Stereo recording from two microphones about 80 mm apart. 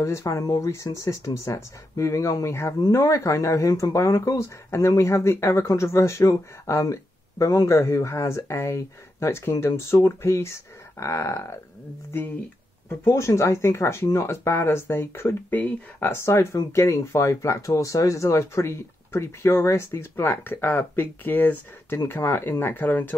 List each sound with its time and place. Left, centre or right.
0.0 s speech: left
13.0 s speech: left